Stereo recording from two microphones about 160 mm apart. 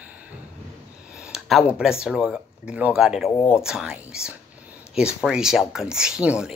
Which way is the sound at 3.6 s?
5° right (ahead or behind).